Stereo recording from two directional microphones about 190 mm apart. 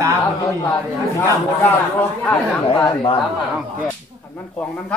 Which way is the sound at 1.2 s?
10° left (ahead or behind).